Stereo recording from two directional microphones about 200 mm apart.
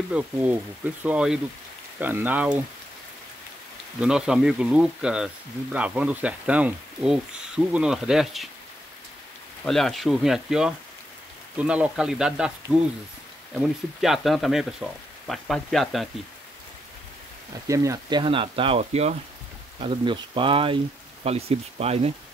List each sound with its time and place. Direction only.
0.1 s speech: 5° right (ahead or behind)
4.0 s speech: 5° right (ahead or behind)
9.7 s speech: centre (ahead or behind)
13.6 s speech: centre (ahead or behind)
17.6 s speech: 15° right (ahead or behind); by 22.1 s 30° right (ahead or behind)